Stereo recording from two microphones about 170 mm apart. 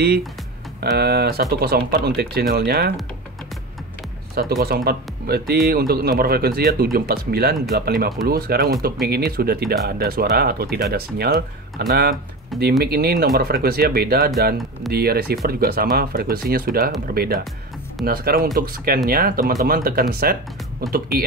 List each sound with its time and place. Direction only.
0.9 s speech: 70° right (ahead or behind)
4.4 s speech: 65° right (ahead or behind)